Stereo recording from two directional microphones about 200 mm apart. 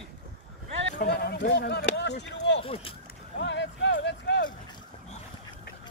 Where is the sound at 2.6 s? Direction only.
30° left (ahead or behind).